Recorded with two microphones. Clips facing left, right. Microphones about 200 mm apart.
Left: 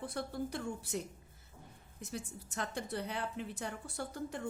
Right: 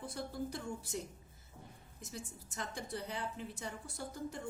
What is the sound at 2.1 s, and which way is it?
A woman's voice, 65° left (ahead or behind).